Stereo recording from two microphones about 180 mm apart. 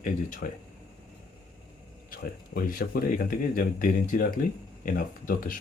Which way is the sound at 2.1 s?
50° left (ahead or behind).